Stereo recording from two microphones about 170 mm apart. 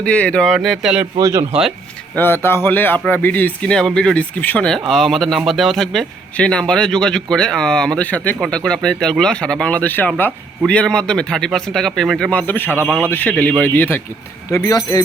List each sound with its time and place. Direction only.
0.0 s speech: 5° left (ahead or behind)
1.2 s speech: 15° right (ahead or behind)
2.1 s a man's voice: 15° left (ahead or behind)